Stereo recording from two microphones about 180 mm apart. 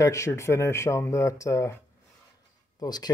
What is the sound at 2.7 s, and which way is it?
Speech, 20° left (ahead or behind).